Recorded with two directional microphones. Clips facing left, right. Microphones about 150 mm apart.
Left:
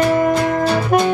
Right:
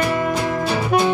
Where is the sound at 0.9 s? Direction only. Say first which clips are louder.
Left 2 dB; 50° left (ahead or behind).